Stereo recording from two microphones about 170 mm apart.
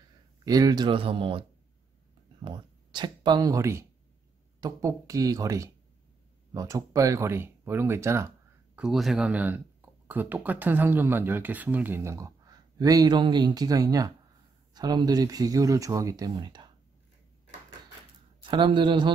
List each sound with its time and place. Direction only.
0.5 s speech: 20° right (ahead or behind)
2.4 s speech: 25° right (ahead or behind)
8.7 s speech: centre (ahead or behind); by 16.7 s 25° right (ahead or behind)
18.4 s speech: 30° right (ahead or behind)